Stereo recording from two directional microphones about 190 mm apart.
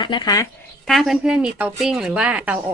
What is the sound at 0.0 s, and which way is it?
Speech, 25° left (ahead or behind).